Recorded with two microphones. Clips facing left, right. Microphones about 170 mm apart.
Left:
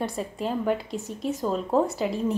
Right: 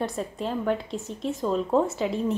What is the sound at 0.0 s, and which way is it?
A woman's voice, 5° left (ahead or behind).